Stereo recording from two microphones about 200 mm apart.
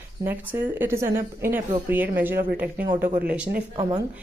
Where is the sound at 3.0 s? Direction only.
45° right (ahead or behind).